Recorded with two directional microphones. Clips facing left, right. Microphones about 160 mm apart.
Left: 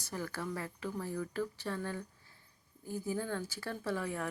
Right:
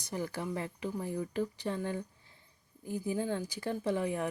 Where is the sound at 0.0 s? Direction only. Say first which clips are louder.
Right 3 dB; 20° right (ahead or behind).